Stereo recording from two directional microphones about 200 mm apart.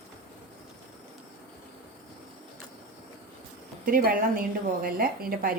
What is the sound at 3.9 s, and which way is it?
A woman's voice, 45° right (ahead or behind).